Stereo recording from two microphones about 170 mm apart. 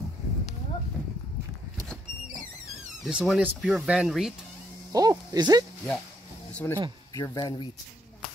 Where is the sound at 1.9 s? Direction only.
Centre (ahead or behind).